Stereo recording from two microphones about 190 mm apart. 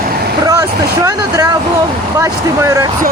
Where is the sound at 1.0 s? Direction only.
20° right (ahead or behind).